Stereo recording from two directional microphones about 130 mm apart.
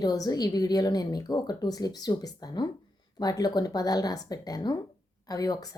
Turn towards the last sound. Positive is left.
turn(degrees=30)  # may be behind; listen again after turning